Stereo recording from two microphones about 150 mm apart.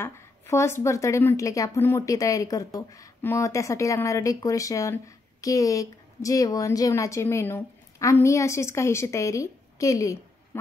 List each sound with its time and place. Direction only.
0.0 s a woman's voice: 20° left (ahead or behind)